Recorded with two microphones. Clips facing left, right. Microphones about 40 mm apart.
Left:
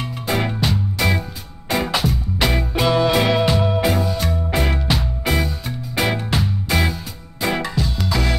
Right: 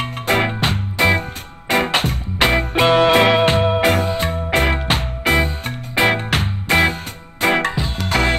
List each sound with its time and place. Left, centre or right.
0.0 s music: right